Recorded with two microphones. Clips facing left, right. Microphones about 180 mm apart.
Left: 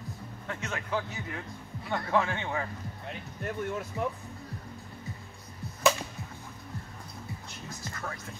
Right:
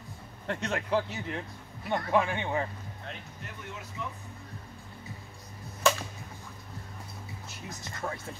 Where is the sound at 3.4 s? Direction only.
50° left (ahead or behind).